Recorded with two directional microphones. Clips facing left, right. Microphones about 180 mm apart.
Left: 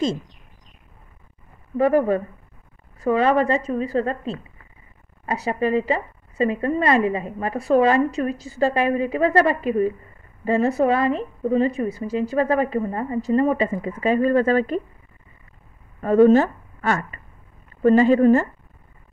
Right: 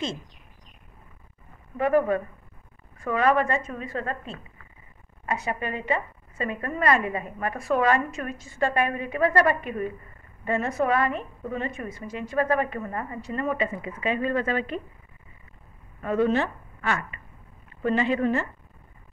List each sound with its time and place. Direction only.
1.8 s a woman's voice: 30° left (ahead or behind)
16.0 s a woman's voice: 45° left (ahead or behind)